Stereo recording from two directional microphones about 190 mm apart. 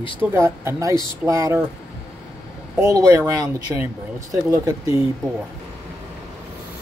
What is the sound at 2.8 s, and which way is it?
Speech, 15° right (ahead or behind).